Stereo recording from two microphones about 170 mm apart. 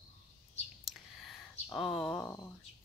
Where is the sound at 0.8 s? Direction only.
Centre (ahead or behind).